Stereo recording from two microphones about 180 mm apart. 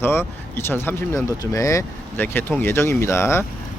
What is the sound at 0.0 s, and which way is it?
Speech, 15° left (ahead or behind).